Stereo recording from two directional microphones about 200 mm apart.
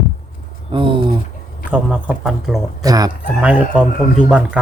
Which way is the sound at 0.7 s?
25° right (ahead or behind).